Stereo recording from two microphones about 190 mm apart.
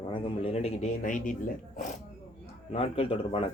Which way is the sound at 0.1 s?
30° left (ahead or behind).